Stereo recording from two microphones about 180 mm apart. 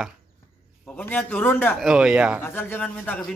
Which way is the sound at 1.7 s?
5° right (ahead or behind).